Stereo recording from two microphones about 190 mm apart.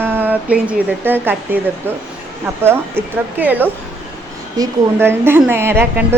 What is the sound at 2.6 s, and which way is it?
A woman's voice, 10° right (ahead or behind).